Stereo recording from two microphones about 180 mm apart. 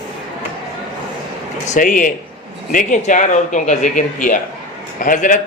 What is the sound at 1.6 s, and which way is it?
A man's voice, 45° left (ahead or behind).